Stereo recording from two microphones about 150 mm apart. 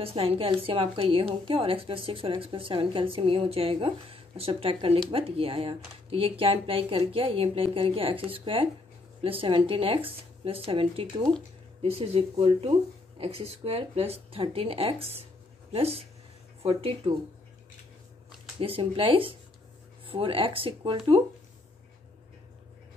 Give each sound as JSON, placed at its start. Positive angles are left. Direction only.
{"t": 0.0, "sound": "a woman's voice", "side_deg": -40}
{"t": 18.6, "sound": "a woman's voice", "side_deg": -35}